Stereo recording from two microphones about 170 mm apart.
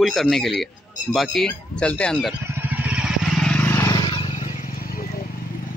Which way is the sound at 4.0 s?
30° left (ahead or behind).